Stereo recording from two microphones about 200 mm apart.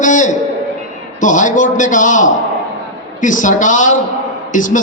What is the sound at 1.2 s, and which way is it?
A man's voice, 40° left (ahead or behind).